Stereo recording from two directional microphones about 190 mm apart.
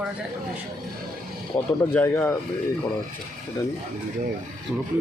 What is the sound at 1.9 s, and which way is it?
Speech, 15° left (ahead or behind).